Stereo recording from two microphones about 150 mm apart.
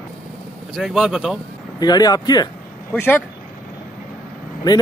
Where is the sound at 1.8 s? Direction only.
25° left (ahead or behind).